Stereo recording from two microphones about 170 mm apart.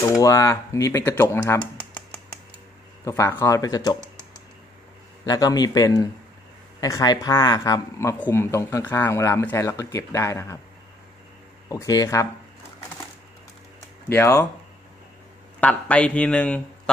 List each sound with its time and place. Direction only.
0.2 s speech: 20° left (ahead or behind)
3.1 s speech: 15° left (ahead or behind)
5.2 s speech: 20° left (ahead or behind)
11.7 s speech: 20° left (ahead or behind)
14.0 s speech: 15° left (ahead or behind)
15.6 s speech: 10° left (ahead or behind)